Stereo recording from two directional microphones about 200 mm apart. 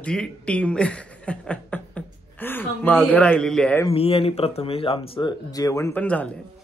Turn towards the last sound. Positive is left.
turn(degrees=5)  # may be behind; listen again after turning